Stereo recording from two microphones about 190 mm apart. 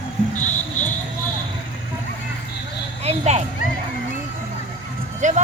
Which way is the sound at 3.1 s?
35° right (ahead or behind).